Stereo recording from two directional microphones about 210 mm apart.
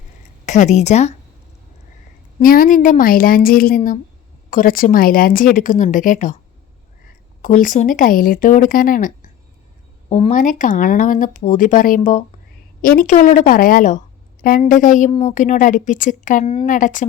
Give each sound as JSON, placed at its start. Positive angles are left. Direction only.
{"t": 0.4, "sound": "speech", "side_deg": 35}
{"t": 2.4, "sound": "a woman's voice", "side_deg": 40}
{"t": 7.4, "sound": "speech", "side_deg": 35}